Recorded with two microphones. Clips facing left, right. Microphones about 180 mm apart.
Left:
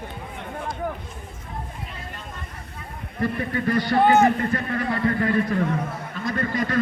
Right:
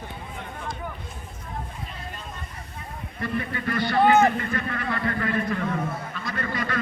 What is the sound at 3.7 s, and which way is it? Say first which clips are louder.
A man's voice: left 1 dB; 40° left (ahead or behind).